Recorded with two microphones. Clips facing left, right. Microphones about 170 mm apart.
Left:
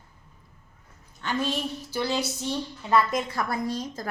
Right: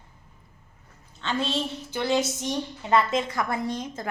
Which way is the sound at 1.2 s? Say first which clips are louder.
Even; 25° right (ahead or behind).